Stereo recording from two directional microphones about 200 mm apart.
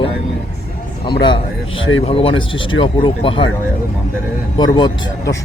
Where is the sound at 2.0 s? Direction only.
30° left (ahead or behind).